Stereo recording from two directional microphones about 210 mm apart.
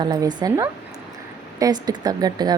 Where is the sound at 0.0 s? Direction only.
20° right (ahead or behind).